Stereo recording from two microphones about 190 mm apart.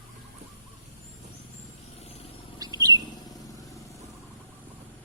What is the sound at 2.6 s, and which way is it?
Bird, 20° right (ahead or behind).